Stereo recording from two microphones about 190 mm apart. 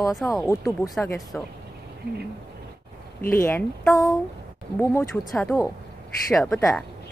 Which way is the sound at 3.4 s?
10° left (ahead or behind).